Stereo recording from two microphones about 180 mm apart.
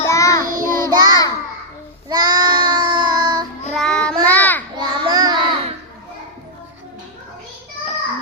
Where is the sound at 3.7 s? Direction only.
5° left (ahead or behind).